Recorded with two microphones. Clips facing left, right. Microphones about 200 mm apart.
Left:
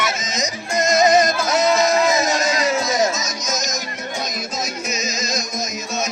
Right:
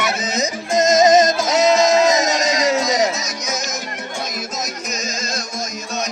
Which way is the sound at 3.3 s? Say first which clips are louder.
Even; 60° right (ahead or behind).